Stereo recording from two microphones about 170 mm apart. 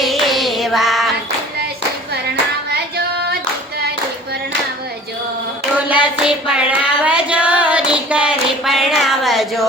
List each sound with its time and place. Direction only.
0.0 s child singing: centre (ahead or behind)
2.3 s singing: 75° right (ahead or behind)
5.9 s child singing: 5° right (ahead or behind)
9.0 s a sound: centre (ahead or behind)